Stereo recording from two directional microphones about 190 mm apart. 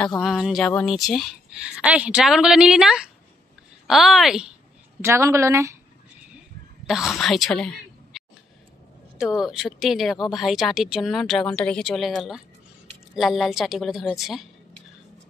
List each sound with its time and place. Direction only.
0.0 s speech: centre (ahead or behind)
5.0 s a woman's voice: 15° right (ahead or behind)
6.9 s speech: centre (ahead or behind)
9.2 s speech: centre (ahead or behind)